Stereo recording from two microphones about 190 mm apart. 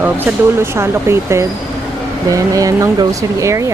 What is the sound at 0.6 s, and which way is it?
Speech, 15° right (ahead or behind).